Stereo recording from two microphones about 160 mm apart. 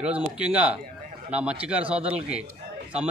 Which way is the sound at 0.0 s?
10° right (ahead or behind).